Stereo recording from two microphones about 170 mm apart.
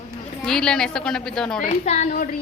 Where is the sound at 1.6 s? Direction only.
45° left (ahead or behind).